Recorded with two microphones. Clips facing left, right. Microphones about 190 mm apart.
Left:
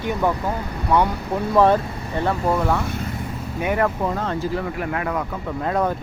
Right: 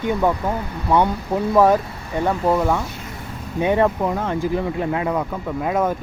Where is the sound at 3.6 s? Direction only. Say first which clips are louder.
Right 4 dB; 25° right (ahead or behind).